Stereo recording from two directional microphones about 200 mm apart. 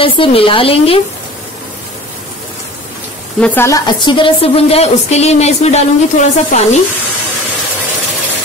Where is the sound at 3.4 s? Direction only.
10° left (ahead or behind).